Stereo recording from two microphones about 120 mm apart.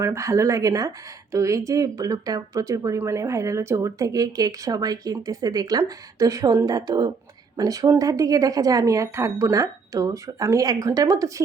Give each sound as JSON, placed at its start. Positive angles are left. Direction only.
{"t": 0.0, "sound": "speech", "side_deg": -25}